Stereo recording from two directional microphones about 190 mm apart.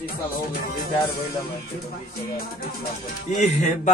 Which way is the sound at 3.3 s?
40° left (ahead or behind).